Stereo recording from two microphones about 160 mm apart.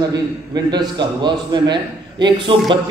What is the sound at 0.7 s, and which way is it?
A man's voice, 30° right (ahead or behind).